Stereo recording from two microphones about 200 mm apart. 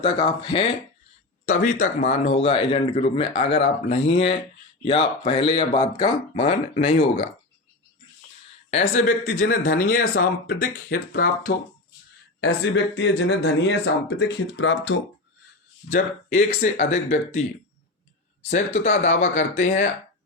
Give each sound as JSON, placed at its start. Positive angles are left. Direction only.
{"t": 0.0, "sound": "speech", "side_deg": 25}
{"t": 1.5, "sound": "speech", "side_deg": 40}
{"t": 8.9, "sound": "speech", "side_deg": 40}
{"t": 12.4, "sound": "speech", "side_deg": 60}
{"t": 15.9, "sound": "speech", "side_deg": 40}
{"t": 18.4, "sound": "speech", "side_deg": 35}